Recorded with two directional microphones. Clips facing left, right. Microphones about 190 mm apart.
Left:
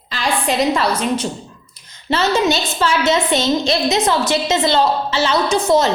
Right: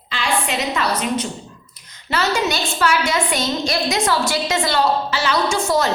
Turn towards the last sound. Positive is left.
turn(degrees=20)  # may be behind; listen again after turning